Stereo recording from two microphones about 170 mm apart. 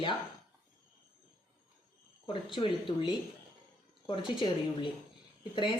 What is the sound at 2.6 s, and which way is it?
Speech, 30° left (ahead or behind).